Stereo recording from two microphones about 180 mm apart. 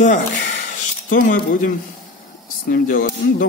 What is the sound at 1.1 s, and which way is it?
Speech, 50° left (ahead or behind).